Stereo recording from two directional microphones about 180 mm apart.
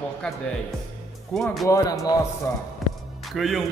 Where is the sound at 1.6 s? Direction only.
20° left (ahead or behind).